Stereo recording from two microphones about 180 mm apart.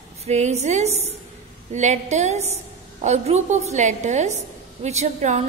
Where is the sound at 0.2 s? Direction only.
40° right (ahead or behind).